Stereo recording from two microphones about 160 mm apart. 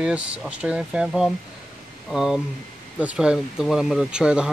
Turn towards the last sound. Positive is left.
turn(degrees=-5)  # may be behind; listen again after turning